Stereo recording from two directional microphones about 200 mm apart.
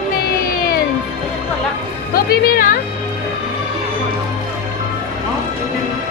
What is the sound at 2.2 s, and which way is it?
Music, 45° left (ahead or behind).